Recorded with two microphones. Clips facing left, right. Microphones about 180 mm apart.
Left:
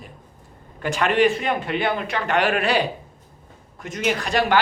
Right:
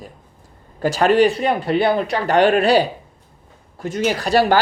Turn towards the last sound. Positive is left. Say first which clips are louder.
# right 5 dB
turn(degrees=-35)  # may be behind; listen again after turning